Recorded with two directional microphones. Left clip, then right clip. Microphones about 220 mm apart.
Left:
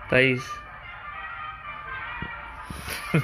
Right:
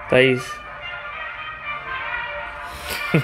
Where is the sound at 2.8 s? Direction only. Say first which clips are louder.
Right 6 dB; 15° right (ahead or behind).